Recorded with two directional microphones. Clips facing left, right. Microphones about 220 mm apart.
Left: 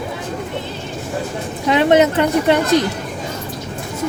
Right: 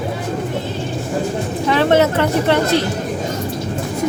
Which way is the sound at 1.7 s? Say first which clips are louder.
Left 1 dB; 20° left (ahead or behind).